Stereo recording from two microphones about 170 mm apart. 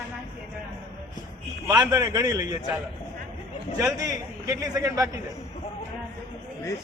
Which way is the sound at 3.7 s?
20° right (ahead or behind).